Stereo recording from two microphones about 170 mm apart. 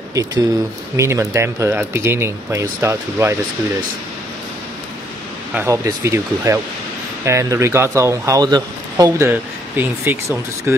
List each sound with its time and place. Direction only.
0.1 s speech: 20° right (ahead or behind)
5.5 s speech: 15° right (ahead or behind)